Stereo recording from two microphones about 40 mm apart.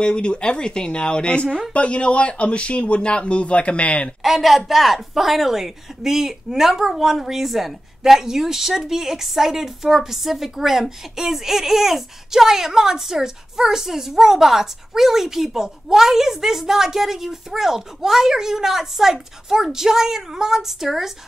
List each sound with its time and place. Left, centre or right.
0.0 s speech: left
4.2 s a woman's voice: centre